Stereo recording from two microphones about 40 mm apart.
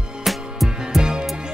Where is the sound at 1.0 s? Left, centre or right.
Centre.